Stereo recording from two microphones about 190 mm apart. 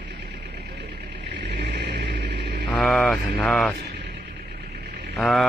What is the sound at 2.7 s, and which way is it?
Speech, centre (ahead or behind).